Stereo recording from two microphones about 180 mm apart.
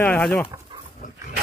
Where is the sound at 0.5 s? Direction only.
20° right (ahead or behind).